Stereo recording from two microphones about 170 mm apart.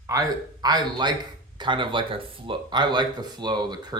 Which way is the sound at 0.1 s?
20° right (ahead or behind).